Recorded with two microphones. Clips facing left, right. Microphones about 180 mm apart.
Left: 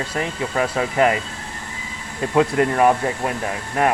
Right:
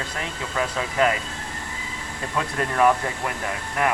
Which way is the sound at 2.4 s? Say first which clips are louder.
Left 6 dB; 30° left (ahead or behind).